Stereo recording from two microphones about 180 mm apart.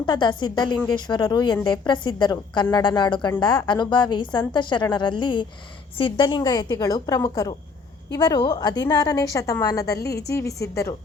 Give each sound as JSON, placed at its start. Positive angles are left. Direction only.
{"t": 0.0, "sound": "a woman's voice", "side_deg": 25}